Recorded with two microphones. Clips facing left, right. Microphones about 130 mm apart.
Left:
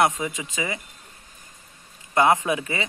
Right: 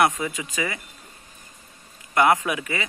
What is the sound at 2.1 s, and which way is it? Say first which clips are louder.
Speech: even; 25° left (ahead or behind).